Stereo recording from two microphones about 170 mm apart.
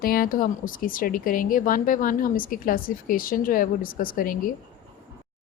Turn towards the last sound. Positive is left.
turn(degrees=55)  # may be behind; listen again after turning